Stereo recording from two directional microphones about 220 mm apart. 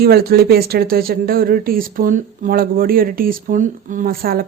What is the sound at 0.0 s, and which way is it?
Speech, 45° right (ahead or behind).